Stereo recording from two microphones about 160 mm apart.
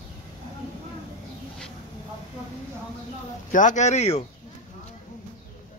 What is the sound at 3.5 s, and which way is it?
Speech, 50° left (ahead or behind).